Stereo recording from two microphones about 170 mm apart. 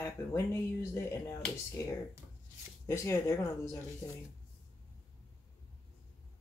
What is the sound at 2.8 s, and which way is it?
Speech, 20° left (ahead or behind).